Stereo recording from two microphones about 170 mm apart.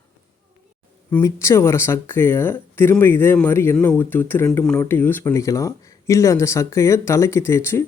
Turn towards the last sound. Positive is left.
turn(degrees=15)  # may be behind; listen again after turning